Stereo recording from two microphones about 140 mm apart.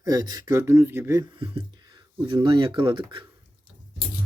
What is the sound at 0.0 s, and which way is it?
Speech, 25° right (ahead or behind).